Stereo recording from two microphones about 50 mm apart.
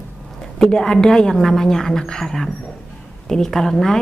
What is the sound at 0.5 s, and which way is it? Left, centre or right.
A woman's voice, centre.